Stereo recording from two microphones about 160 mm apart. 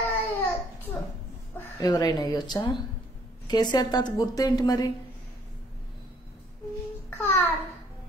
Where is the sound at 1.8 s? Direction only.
25° left (ahead or behind).